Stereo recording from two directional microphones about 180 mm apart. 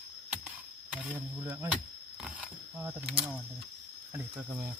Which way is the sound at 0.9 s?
5° right (ahead or behind).